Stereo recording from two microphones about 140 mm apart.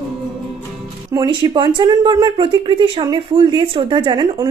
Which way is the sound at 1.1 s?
30° right (ahead or behind).